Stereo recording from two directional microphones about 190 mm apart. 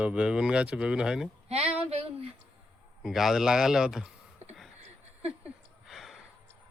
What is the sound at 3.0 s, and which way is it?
Speech, centre (ahead or behind).